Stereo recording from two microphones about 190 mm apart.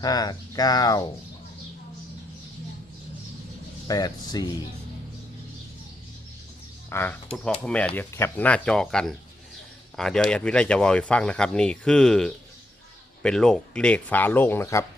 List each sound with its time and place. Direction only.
0.0 s speech: 20° left (ahead or behind)
3.8 s speech: 20° left (ahead or behind)
6.9 s speech: 10° left (ahead or behind)